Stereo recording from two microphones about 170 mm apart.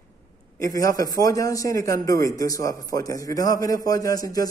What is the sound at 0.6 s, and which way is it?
A man's voice, 20° left (ahead or behind).